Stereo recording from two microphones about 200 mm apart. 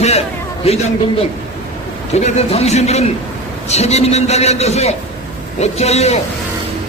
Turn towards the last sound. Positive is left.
turn(degrees=35)  # may be behind; listen again after turning